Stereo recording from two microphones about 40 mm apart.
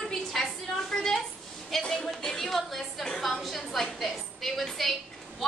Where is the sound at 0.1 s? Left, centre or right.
Centre.